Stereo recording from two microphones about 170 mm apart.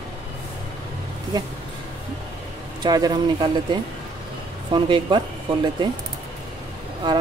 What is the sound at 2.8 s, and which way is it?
Speech, 25° right (ahead or behind).